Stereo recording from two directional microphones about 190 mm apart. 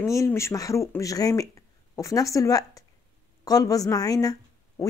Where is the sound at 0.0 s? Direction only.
15° left (ahead or behind).